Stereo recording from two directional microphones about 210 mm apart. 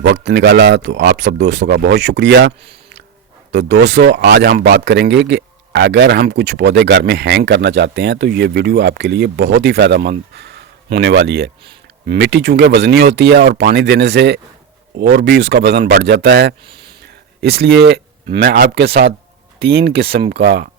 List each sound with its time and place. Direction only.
0.0 s speech: 55° right (ahead or behind)
3.5 s speech: 55° right (ahead or behind)